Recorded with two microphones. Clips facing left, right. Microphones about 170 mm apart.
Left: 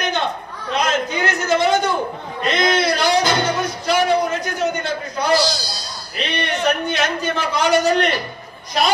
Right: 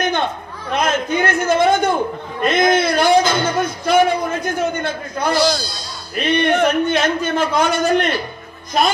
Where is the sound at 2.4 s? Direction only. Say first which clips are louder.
Right 3 dB; 50° right (ahead or behind).